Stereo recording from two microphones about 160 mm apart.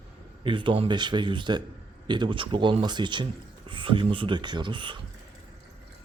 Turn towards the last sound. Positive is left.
turn(degrees=-30)  # may be behind; listen again after turning